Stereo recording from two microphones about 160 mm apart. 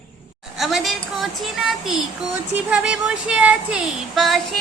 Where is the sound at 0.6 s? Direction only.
Centre (ahead or behind).